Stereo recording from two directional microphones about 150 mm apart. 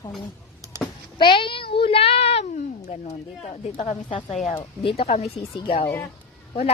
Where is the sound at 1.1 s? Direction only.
35° left (ahead or behind); by 3.9 s 50° left (ahead or behind).